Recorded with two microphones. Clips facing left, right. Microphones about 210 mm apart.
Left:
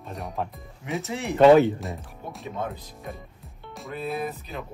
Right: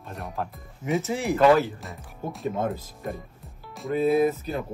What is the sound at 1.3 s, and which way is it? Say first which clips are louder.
Speech: left 4 dB; 25° left (ahead or behind).